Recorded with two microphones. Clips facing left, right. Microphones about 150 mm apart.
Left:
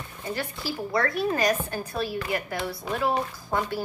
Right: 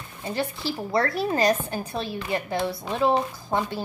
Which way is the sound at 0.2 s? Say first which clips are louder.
Right 4 dB; 25° right (ahead or behind).